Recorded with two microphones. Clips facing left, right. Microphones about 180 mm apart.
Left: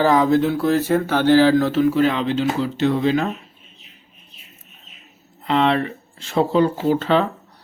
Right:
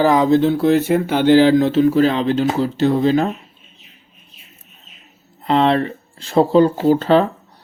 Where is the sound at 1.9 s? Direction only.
35° right (ahead or behind).